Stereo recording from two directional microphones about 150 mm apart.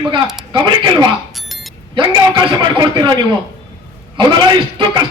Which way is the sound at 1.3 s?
Centre (ahead or behind).